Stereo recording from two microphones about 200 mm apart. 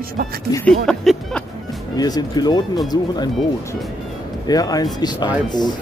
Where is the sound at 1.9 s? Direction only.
20° left (ahead or behind).